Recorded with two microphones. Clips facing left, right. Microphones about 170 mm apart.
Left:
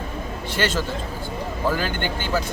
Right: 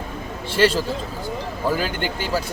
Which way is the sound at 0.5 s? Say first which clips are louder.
Right 6 dB; 30° right (ahead or behind).